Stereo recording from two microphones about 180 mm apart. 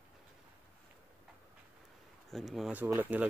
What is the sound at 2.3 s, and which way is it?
Speech, centre (ahead or behind).